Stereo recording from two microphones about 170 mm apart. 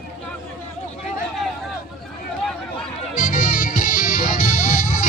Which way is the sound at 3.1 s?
55° left (ahead or behind).